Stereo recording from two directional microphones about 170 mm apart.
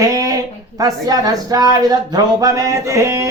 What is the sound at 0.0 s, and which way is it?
Speech, 20° right (ahead or behind).